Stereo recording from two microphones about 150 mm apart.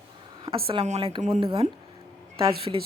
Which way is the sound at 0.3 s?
35° right (ahead or behind).